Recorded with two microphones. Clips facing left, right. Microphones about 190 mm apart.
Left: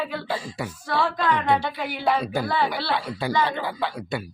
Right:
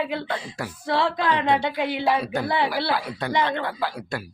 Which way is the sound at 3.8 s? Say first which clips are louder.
Left 1 dB; centre (ahead or behind).